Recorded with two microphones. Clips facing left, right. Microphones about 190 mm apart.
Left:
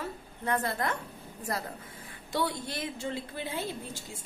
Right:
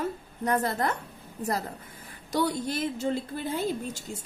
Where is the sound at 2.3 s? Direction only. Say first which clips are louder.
Right 5 dB; 40° right (ahead or behind).